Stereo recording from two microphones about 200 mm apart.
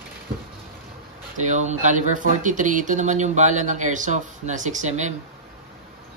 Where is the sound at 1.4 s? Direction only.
35° right (ahead or behind).